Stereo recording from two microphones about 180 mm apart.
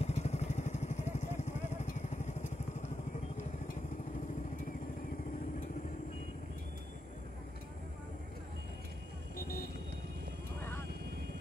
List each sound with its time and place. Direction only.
0.0 s vehicle: 40° left (ahead or behind)
10.6 s vehicle: 15° left (ahead or behind)